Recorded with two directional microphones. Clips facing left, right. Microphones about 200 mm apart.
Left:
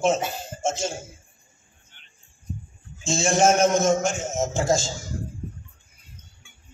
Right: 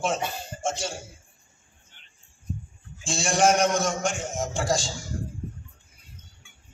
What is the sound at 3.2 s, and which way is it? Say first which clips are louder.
Speech: left 3 dB; 25° left (ahead or behind).